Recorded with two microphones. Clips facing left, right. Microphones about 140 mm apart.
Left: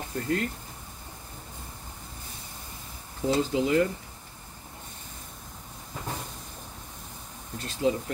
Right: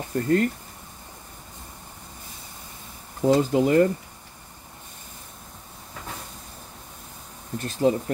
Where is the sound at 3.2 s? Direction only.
50° right (ahead or behind).